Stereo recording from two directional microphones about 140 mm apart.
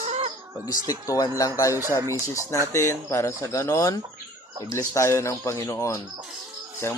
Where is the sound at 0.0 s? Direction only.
50° right (ahead or behind).